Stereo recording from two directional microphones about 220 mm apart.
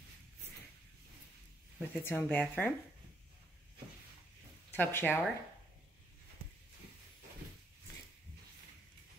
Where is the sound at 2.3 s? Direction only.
5° left (ahead or behind).